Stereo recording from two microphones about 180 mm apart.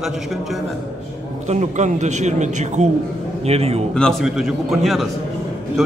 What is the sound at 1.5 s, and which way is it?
A man's voice, 40° right (ahead or behind).